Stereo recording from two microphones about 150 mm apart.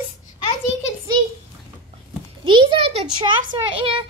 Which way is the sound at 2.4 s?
35° right (ahead or behind).